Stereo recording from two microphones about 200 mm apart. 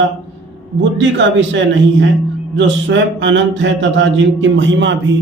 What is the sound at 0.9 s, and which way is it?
Speech, 65° right (ahead or behind).